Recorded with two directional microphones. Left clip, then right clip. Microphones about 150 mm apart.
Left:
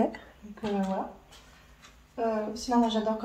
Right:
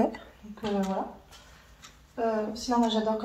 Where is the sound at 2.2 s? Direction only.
30° right (ahead or behind).